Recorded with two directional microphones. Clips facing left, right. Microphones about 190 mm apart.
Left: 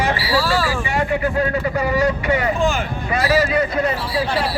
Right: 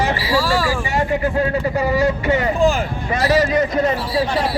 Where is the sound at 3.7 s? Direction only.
20° right (ahead or behind).